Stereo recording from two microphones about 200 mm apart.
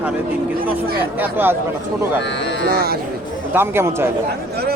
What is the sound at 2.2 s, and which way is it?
Speech, 60° left (ahead or behind).